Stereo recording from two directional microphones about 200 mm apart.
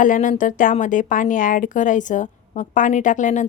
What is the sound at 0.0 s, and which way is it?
A woman's voice, 40° left (ahead or behind).